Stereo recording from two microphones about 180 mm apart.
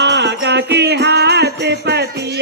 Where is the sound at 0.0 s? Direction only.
75° right (ahead or behind).